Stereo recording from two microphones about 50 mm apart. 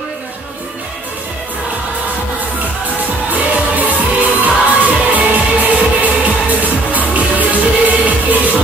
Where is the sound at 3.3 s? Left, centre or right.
Right.